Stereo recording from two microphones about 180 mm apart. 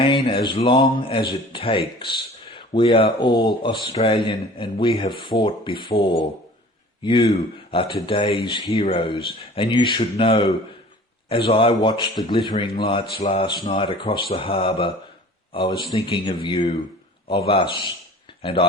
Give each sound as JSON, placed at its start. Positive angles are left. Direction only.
{"t": 0.0, "sound": "speech", "side_deg": 30}